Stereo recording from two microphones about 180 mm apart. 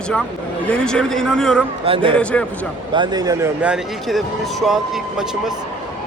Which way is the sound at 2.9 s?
25° right (ahead or behind).